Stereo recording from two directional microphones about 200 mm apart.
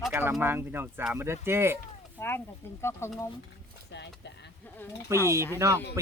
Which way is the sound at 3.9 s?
60° left (ahead or behind).